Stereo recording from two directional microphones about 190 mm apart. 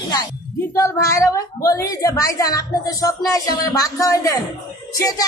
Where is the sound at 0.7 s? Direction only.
15° left (ahead or behind).